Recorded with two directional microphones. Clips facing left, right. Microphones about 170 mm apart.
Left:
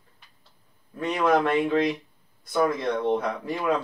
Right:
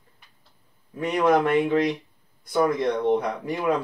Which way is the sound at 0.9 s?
15° right (ahead or behind).